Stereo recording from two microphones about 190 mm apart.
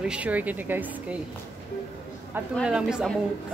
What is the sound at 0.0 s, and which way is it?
Speech, 5° right (ahead or behind).